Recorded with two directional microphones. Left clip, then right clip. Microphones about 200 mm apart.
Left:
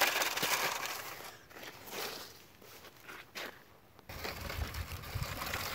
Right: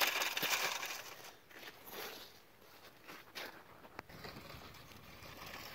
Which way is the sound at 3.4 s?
45° right (ahead or behind).